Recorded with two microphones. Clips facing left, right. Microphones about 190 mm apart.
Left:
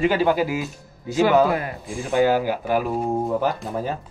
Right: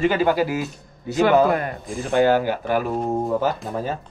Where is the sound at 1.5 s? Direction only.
50° right (ahead or behind).